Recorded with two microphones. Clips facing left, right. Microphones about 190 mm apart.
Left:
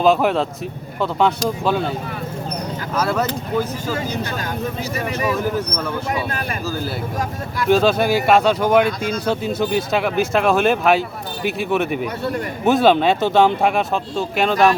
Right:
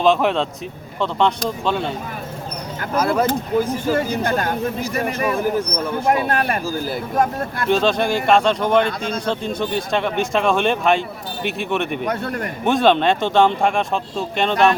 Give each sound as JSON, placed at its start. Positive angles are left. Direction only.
{"t": 0.0, "sound": "speech", "side_deg": 5}
{"t": 3.2, "sound": "speech", "side_deg": -50}
{"t": 7.7, "sound": "speech", "side_deg": 5}